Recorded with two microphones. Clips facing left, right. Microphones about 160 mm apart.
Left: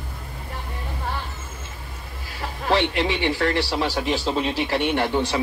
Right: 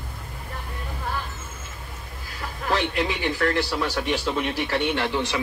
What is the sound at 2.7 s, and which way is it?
A man's voice, 25° left (ahead or behind).